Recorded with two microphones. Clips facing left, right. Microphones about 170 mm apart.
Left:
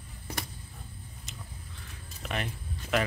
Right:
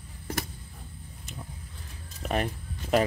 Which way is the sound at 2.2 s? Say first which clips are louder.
Right 6 dB; 40° right (ahead or behind).